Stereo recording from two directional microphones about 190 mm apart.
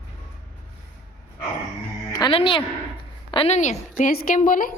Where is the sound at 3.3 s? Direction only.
30° left (ahead or behind); by 4.7 s 45° left (ahead or behind).